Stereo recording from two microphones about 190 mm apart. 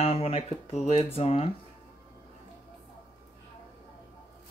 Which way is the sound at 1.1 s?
30° left (ahead or behind).